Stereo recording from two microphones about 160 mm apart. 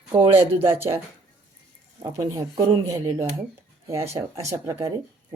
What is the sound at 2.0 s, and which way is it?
Speech, 20° right (ahead or behind).